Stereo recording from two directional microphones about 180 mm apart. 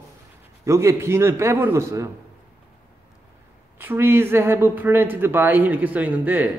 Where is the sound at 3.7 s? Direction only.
10° right (ahead or behind).